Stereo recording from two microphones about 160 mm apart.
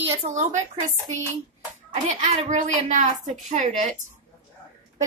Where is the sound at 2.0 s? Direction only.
50° right (ahead or behind).